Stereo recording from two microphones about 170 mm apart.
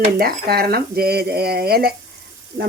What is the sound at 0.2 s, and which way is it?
Speech, 65° right (ahead or behind).